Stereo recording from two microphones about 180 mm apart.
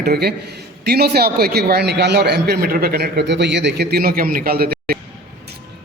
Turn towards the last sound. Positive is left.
turn(degrees=-55)  # may be behind; listen again after turning